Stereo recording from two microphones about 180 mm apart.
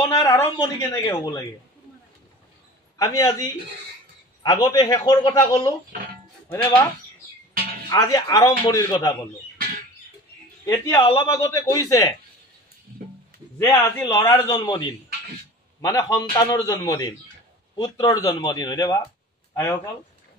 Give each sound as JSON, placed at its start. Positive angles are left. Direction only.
{"t": 0.0, "sound": "speech", "side_deg": 20}
{"t": 3.0, "sound": "a man's voice", "side_deg": 20}
{"t": 7.9, "sound": "speech", "side_deg": 20}
{"t": 10.6, "sound": "a man's voice", "side_deg": 15}
{"t": 13.6, "sound": "speech", "side_deg": 20}
{"t": 15.8, "sound": "a man's voice", "side_deg": 20}